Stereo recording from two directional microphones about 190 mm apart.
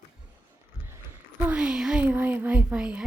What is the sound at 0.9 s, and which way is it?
Speech, 10° right (ahead or behind).